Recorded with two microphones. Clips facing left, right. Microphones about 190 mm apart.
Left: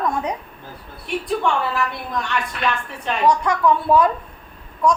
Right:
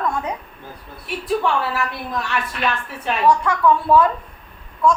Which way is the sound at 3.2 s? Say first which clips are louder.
Right 1 dB; 15° left (ahead or behind).